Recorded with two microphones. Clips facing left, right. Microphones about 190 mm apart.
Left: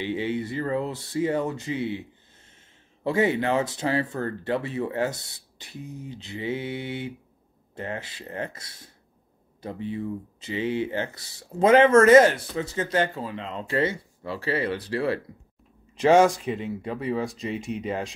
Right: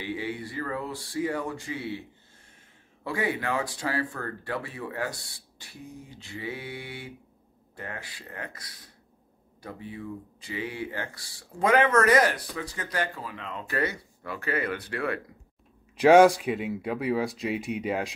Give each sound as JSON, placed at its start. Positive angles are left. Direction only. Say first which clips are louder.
{"t": 0.0, "sound": "speech", "louder": "left 6 dB", "side_deg": 25}
{"t": 16.0, "sound": "speech", "louder": "right 1 dB", "side_deg": -5}